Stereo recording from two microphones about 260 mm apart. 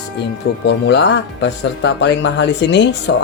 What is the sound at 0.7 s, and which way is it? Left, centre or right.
Speech, left.